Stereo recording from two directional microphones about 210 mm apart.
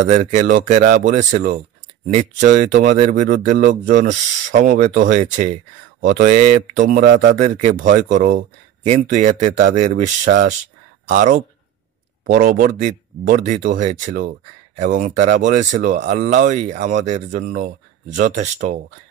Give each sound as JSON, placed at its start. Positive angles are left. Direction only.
{"t": 0.1, "sound": "speech", "side_deg": -35}